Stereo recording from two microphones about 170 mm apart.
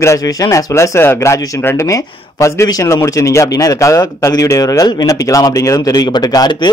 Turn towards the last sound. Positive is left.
turn(degrees=25)  # may be behind; listen again after turning